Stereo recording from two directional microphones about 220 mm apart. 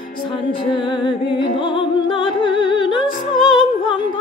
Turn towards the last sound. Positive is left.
turn(degrees=20)  # may be behind; listen again after turning